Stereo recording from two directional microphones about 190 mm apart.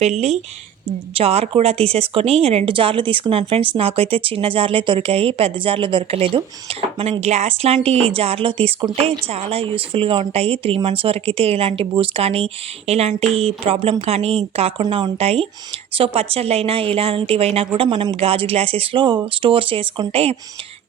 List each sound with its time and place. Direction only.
0.0 s speech: 35° right (ahead or behind)